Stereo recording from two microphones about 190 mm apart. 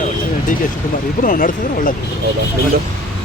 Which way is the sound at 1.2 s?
45° left (ahead or behind).